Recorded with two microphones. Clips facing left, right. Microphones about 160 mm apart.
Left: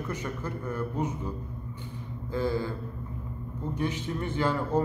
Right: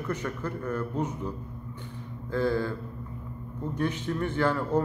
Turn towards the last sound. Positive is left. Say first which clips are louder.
# right 1 dB
turn(degrees=15)  # may be behind; listen again after turning